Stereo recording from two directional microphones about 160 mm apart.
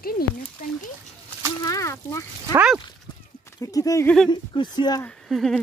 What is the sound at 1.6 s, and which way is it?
Speech, 20° left (ahead or behind).